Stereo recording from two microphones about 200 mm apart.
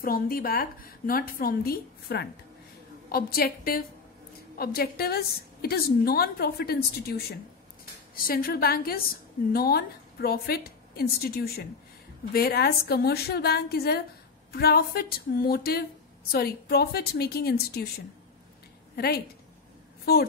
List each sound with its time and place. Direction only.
0.0 s a woman's voice: 45° left (ahead or behind)
18.9 s a woman's voice: 50° left (ahead or behind)